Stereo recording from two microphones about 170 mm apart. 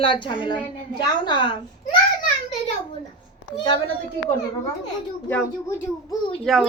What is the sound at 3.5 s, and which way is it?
Speech, 30° left (ahead or behind).